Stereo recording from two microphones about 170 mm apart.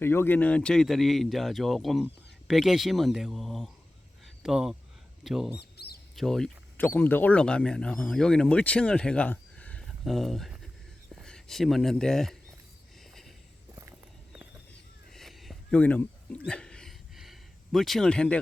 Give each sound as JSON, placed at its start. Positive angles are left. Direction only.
{"t": 0.0, "sound": "speech", "side_deg": 15}
{"t": 5.7, "sound": "mouse", "side_deg": 70}
{"t": 6.1, "sound": "speech", "side_deg": 0}
{"t": 15.1, "sound": "a sound", "side_deg": 0}